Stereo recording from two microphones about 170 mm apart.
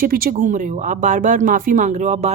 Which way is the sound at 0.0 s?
60° right (ahead or behind).